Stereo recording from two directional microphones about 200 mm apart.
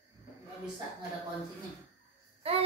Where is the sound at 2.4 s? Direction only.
30° right (ahead or behind).